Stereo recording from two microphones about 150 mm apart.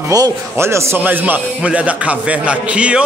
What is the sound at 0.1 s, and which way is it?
A man's voice, 20° right (ahead or behind).